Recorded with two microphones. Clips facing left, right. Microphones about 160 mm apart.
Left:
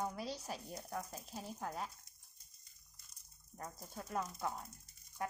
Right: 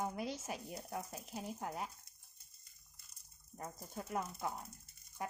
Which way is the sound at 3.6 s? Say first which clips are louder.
Right 2 dB; 10° right (ahead or behind).